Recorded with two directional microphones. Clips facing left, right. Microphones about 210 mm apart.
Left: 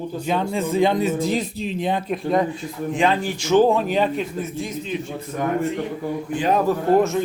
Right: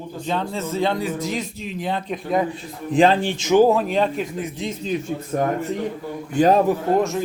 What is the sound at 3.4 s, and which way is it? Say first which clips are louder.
Speech: right 1 dB; 15° right (ahead or behind).